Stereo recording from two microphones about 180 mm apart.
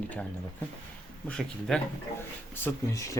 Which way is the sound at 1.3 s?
5° left (ahead or behind).